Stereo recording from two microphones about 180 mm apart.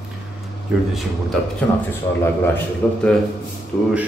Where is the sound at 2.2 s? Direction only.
10° left (ahead or behind).